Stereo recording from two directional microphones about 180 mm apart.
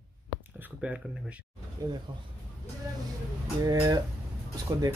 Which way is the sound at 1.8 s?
20° right (ahead or behind).